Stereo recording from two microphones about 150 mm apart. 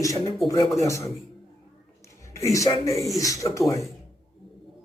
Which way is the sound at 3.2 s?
20° left (ahead or behind).